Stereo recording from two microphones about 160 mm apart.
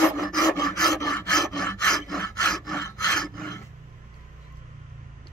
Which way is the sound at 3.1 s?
5° left (ahead or behind).